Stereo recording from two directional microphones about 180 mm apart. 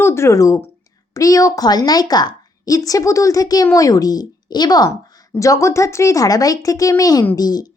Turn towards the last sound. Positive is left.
turn(degrees=20)  # may be behind; listen again after turning